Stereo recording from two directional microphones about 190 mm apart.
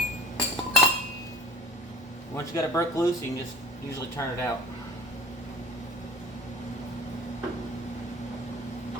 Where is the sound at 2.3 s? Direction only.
15° left (ahead or behind).